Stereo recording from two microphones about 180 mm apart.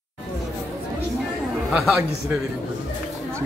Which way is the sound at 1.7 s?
5° right (ahead or behind).